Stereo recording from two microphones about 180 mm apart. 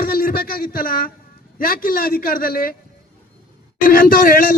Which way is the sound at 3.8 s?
55° left (ahead or behind).